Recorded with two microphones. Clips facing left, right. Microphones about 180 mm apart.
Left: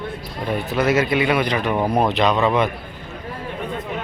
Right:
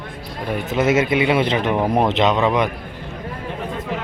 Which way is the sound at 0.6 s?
20° right (ahead or behind).